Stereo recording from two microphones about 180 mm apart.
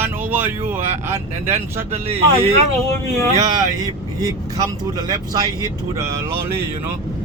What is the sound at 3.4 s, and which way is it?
Speech, 20° right (ahead or behind).